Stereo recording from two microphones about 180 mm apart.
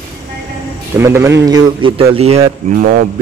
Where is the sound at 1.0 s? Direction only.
15° right (ahead or behind); by 2.5 s 35° right (ahead or behind).